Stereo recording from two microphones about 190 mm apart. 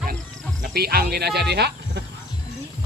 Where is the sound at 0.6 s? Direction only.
55° right (ahead or behind).